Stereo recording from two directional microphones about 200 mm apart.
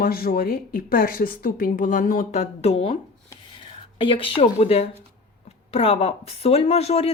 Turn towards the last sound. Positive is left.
turn(degrees=30)  # may be behind; listen again after turning